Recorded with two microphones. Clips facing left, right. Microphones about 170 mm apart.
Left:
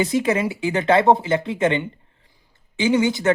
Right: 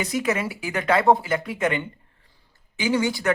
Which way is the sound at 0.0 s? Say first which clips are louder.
Left 5 dB; 25° left (ahead or behind).